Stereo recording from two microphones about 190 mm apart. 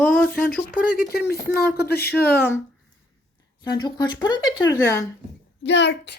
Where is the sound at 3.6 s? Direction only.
20° left (ahead or behind).